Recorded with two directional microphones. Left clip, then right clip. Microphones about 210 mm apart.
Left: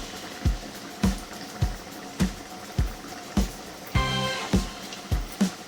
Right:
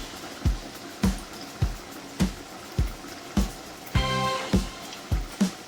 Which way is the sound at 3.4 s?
Centre (ahead or behind).